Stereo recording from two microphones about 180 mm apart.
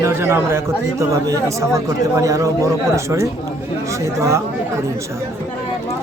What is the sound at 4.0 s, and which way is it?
Speech, 15° right (ahead or behind).